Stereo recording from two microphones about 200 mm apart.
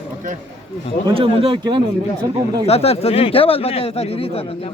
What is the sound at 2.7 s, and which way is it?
A man's voice, 30° left (ahead or behind).